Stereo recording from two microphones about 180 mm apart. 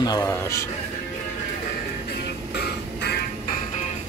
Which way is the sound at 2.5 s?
65° left (ahead or behind).